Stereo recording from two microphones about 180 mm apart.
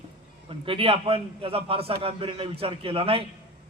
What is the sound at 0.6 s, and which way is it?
A man's voice, 30° right (ahead or behind).